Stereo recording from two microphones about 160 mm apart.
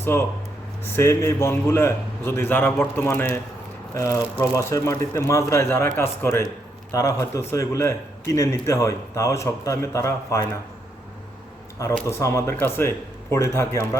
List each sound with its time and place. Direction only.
0.0 s a man's voice: 15° left (ahead or behind)
12.0 s a man's voice: 15° left (ahead or behind)